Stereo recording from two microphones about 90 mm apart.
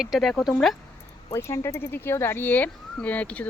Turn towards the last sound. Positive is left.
turn(degrees=15)  # may be behind; listen again after turning